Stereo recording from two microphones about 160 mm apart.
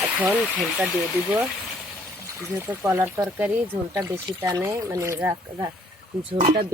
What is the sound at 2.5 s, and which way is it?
Speech, 10° right (ahead or behind).